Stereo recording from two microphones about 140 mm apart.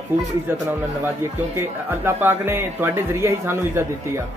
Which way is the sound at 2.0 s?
15° right (ahead or behind).